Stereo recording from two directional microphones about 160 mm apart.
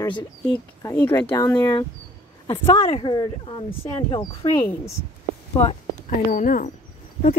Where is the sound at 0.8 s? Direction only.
15° left (ahead or behind).